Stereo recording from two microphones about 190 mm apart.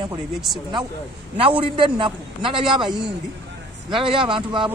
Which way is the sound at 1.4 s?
25° right (ahead or behind).